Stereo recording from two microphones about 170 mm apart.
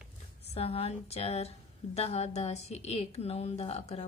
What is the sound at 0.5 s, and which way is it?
A woman's voice, 35° left (ahead or behind).